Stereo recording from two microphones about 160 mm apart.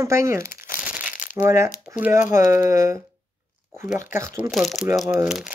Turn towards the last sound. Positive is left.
turn(degrees=-5)  # may be behind; listen again after turning